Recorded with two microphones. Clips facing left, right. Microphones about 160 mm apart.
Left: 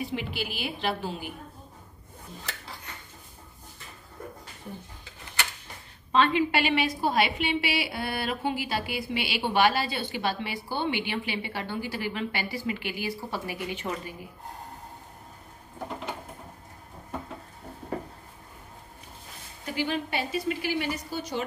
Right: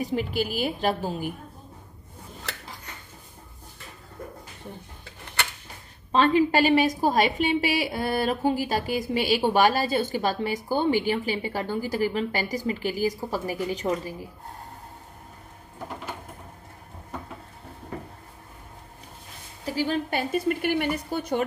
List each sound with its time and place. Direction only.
0.0 s a woman's voice: 40° right (ahead or behind)
6.1 s a woman's voice: 40° right (ahead or behind)
19.6 s a woman's voice: 35° right (ahead or behind)
20.2 s a woman's voice: 50° right (ahead or behind)